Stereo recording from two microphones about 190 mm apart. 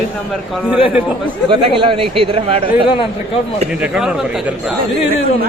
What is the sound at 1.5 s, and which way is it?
Speech, 25° right (ahead or behind).